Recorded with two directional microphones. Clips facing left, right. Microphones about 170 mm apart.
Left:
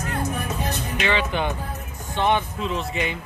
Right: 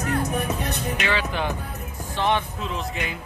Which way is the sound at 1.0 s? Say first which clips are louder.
Left 4 dB; centre (ahead or behind).